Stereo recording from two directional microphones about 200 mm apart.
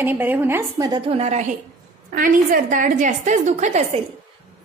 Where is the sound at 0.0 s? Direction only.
10° right (ahead or behind).